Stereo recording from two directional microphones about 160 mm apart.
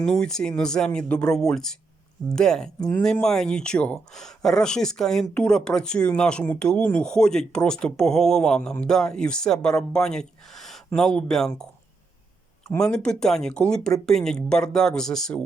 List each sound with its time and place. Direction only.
0.0 s speech: 5° left (ahead or behind)
12.8 s speech: 5° left (ahead or behind)